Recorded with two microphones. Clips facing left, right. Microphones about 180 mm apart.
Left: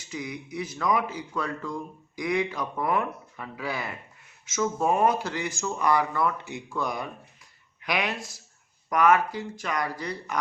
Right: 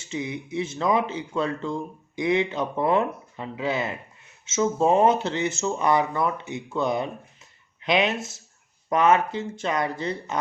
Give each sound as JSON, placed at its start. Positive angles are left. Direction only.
{"t": 0.0, "sound": "speech", "side_deg": -25}